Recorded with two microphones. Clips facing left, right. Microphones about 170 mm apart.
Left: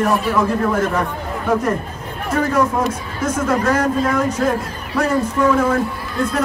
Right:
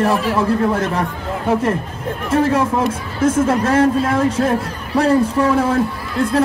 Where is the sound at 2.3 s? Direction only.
25° right (ahead or behind).